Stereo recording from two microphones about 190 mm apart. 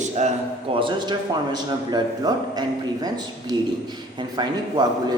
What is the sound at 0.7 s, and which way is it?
A man's voice, 25° right (ahead or behind).